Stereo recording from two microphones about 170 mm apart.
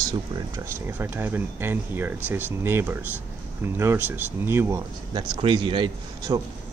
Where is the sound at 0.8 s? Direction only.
10° right (ahead or behind).